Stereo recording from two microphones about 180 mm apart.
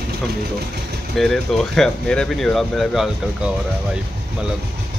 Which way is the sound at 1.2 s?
Centre (ahead or behind).